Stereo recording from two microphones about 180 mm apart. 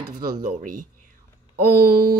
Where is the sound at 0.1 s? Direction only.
45° right (ahead or behind).